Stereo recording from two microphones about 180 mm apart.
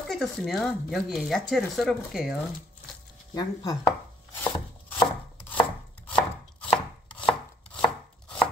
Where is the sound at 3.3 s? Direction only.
20° left (ahead or behind).